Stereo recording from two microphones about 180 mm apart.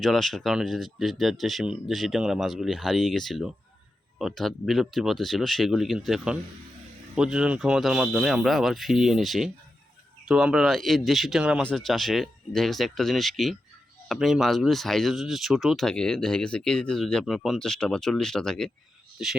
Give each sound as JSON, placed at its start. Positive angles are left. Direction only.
{"t": 0.0, "sound": "speech", "side_deg": 0}